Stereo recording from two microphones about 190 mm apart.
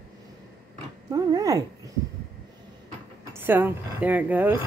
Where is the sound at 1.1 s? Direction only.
20° right (ahead or behind).